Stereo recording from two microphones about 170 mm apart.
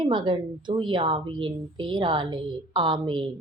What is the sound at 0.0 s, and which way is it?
A woman's voice, 30° right (ahead or behind).